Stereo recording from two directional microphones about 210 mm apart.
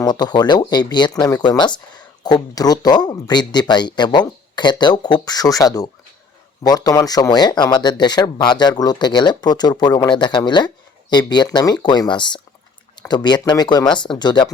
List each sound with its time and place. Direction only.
0.0 s speech: 20° left (ahead or behind)